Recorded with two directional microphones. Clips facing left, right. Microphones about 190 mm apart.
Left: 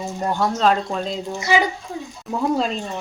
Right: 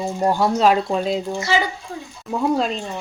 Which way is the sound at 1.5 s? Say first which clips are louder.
Left 2 dB; 15° left (ahead or behind).